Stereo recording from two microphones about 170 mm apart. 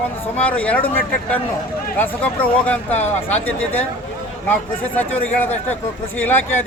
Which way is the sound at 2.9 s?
40° left (ahead or behind).